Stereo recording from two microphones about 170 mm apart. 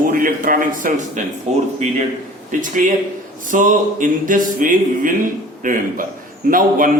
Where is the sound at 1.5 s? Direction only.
40° right (ahead or behind).